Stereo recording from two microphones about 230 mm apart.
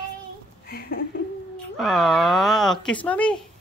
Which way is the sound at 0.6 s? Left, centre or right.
Left.